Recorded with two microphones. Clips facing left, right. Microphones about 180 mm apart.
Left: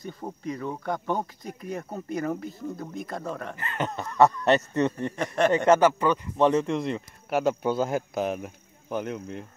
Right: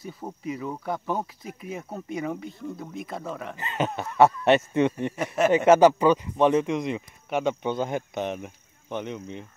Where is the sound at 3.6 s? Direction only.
20° right (ahead or behind).